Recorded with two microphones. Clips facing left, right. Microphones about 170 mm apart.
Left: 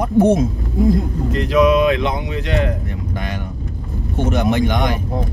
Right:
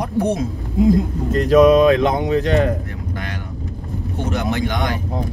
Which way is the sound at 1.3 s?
45° right (ahead or behind).